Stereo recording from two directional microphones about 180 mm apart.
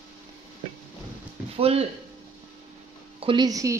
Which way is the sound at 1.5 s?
35° right (ahead or behind).